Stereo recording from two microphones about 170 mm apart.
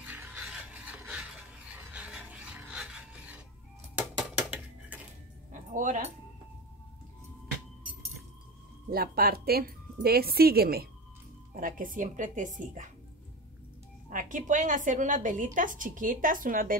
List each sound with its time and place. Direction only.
0.0 s filing: 10° right (ahead or behind)
4.0 s cutlery: 5° right (ahead or behind)
5.5 s music: 50° right (ahead or behind)
8.9 s speech: 65° right (ahead or behind)
11.5 s a woman's voice: 55° right (ahead or behind)
14.0 s a woman's voice: 50° right (ahead or behind)